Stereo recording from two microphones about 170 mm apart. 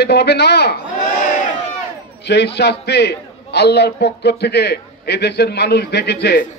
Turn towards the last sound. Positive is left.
turn(degrees=75)  # may be behind; listen again after turning